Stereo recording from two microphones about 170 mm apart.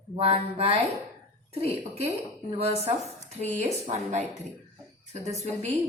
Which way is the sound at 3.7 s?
45° right (ahead or behind).